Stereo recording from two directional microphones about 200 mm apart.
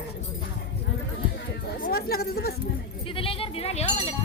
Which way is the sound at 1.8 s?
50° left (ahead or behind).